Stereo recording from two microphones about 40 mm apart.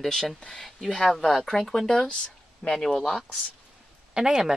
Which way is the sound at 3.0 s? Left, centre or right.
Centre.